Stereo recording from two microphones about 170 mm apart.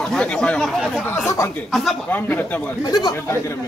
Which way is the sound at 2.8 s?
25° left (ahead or behind).